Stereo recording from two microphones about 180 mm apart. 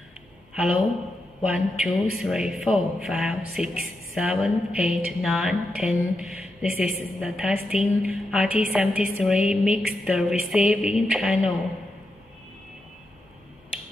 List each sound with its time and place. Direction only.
0.6 s a man's voice: 5° right (ahead or behind)